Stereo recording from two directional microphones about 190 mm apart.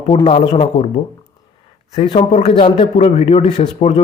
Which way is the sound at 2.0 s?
30° left (ahead or behind).